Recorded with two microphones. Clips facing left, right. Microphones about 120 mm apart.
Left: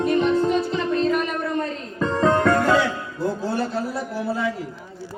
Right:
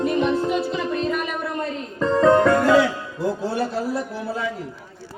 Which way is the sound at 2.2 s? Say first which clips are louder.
Right 3 dB; 25° right (ahead or behind).